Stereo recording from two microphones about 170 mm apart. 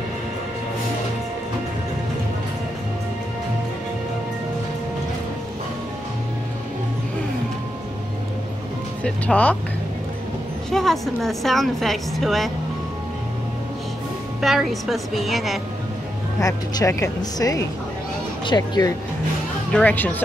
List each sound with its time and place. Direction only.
9.0 s speech: 5° left (ahead or behind)
10.7 s a woman's voice: centre (ahead or behind)
14.4 s a woman's voice: centre (ahead or behind)
16.3 s speech: 20° left (ahead or behind)
19.7 s speech: 10° left (ahead or behind)